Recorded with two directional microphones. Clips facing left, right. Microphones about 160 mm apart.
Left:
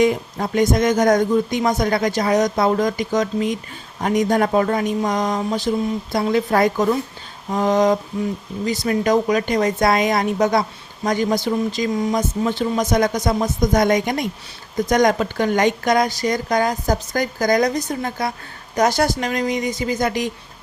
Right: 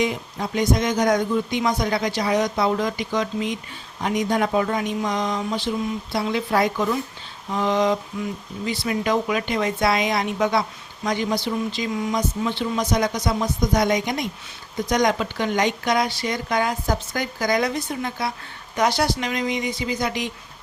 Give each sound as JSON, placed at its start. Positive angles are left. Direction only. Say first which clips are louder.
{"t": 0.0, "sound": "speech", "louder": "left 6 dB", "side_deg": 50}